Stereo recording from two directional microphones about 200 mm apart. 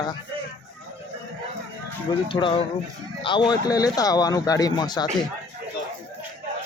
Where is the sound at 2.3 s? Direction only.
25° left (ahead or behind).